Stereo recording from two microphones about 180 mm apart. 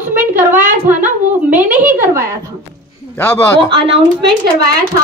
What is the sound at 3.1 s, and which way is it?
Speech, 15° left (ahead or behind).